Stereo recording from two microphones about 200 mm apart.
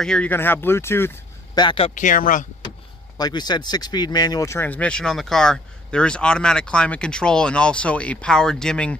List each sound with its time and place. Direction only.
0.0 s speech: 5° left (ahead or behind); by 1.9 s 25° left (ahead or behind)
2.0 s speech: 40° left (ahead or behind)
3.2 s speech: 20° left (ahead or behind); by 8.9 s 5° left (ahead or behind)